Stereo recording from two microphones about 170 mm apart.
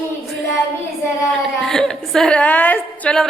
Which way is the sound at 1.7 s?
5° left (ahead or behind).